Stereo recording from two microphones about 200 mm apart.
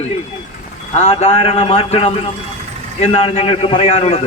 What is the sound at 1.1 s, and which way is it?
A man's voice, 30° left (ahead or behind).